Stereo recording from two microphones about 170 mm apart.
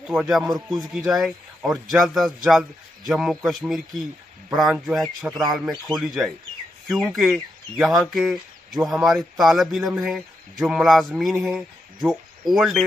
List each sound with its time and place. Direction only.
0.0 s speech: centre (ahead or behind)
0.4 s speech: 25° right (ahead or behind)
0.8 s speech: centre (ahead or behind)
5.3 s speech: 25° right (ahead or behind)
5.9 s speech: centre (ahead or behind)